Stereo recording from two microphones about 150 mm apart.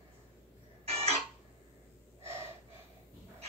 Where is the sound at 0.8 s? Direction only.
45° right (ahead or behind).